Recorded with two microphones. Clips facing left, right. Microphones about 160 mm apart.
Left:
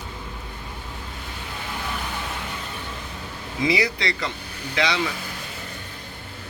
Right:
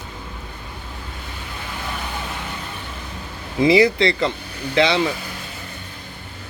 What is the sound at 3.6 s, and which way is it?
A man's voice, 30° right (ahead or behind).